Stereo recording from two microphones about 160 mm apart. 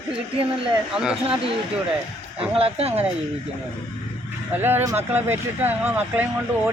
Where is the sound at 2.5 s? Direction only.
35° right (ahead or behind).